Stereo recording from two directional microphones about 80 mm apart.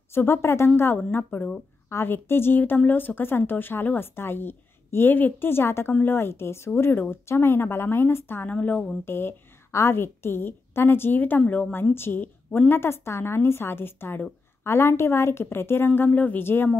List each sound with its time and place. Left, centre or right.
0.1 s a woman's voice: left
8.5 s a woman's voice: centre
9.0 s a woman's voice: left